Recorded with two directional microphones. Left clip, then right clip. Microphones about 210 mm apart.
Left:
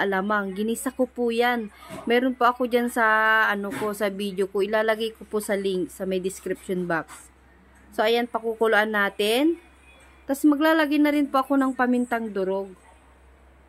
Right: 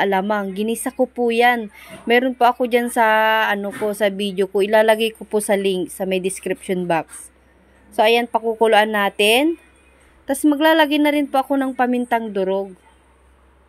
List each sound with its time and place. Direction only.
0.0 s speech: 10° right (ahead or behind)